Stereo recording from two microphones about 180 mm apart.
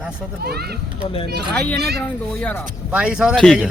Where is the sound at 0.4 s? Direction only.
60° right (ahead or behind).